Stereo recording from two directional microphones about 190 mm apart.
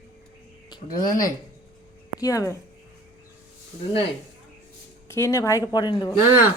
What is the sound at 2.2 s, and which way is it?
Speech, 20° left (ahead or behind).